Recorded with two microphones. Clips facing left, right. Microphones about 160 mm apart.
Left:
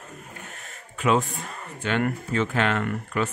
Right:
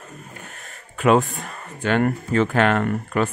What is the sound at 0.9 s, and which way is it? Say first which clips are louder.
Speech: right 5 dB; 55° right (ahead or behind).